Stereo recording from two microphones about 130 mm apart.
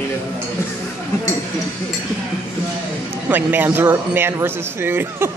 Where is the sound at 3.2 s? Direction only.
15° right (ahead or behind).